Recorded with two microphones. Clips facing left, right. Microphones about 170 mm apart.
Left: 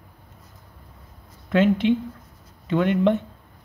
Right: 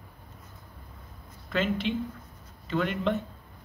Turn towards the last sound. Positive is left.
turn(degrees=55)  # may be behind; listen again after turning